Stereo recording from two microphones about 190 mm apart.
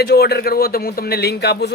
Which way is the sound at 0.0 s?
55° left (ahead or behind).